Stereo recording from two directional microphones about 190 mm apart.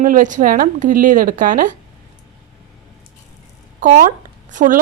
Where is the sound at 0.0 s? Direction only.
45° right (ahead or behind).